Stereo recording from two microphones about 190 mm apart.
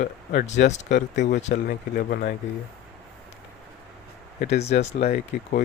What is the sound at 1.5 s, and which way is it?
Speech, 50° left (ahead or behind).